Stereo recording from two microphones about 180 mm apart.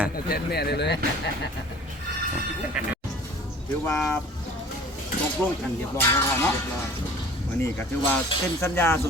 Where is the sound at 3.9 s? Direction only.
15° left (ahead or behind).